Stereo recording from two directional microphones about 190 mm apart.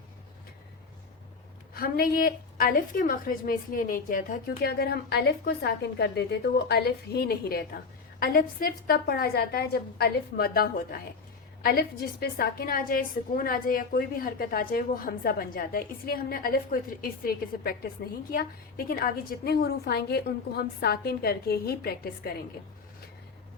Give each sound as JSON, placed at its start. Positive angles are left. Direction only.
{"t": 1.7, "sound": "a woman's voice", "side_deg": 50}